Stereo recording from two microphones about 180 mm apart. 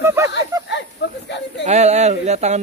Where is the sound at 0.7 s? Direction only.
75° left (ahead or behind).